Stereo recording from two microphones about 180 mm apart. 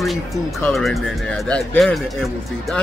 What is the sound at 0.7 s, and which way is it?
Speech, centre (ahead or behind).